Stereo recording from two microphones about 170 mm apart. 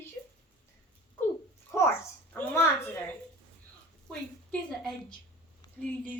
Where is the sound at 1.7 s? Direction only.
15° left (ahead or behind).